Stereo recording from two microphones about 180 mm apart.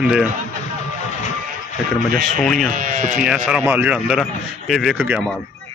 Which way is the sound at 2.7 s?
45° right (ahead or behind).